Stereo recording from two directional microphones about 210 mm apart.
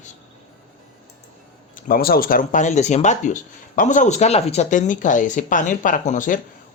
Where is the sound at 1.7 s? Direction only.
45° left (ahead or behind).